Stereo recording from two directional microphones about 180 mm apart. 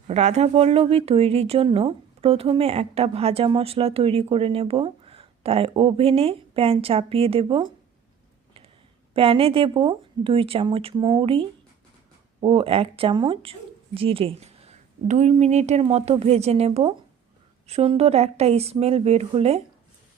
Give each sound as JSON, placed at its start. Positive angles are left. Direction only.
{"t": 0.1, "sound": "speech", "side_deg": -40}
{"t": 9.1, "sound": "speech", "side_deg": -30}